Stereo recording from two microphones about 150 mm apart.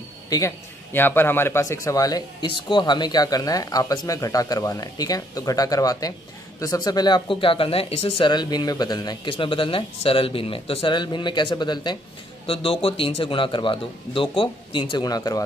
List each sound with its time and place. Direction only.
0.9 s a man's voice: 15° left (ahead or behind); by 8.3 s 40° left (ahead or behind)
8.3 s a man's voice: 30° left (ahead or behind)